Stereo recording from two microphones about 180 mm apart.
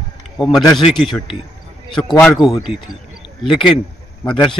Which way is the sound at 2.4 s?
Centre (ahead or behind).